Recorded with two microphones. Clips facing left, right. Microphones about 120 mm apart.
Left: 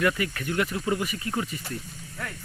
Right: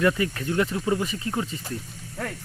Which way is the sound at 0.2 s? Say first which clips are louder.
Right 3 dB; 25° right (ahead or behind).